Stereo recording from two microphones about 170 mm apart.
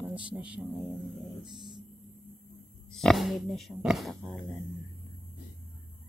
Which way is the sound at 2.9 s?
Centre (ahead or behind).